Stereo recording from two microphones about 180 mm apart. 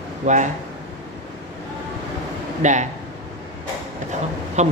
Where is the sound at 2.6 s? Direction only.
40° right (ahead or behind).